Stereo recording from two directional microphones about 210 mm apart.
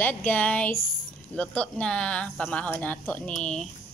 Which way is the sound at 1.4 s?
5° left (ahead or behind).